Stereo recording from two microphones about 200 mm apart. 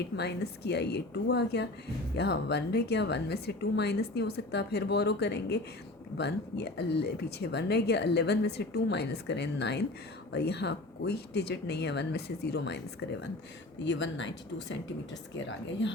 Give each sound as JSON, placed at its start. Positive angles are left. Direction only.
{"t": 0.2, "sound": "speech", "side_deg": 55}